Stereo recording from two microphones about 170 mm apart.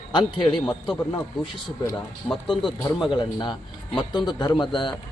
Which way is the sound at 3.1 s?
25° left (ahead or behind).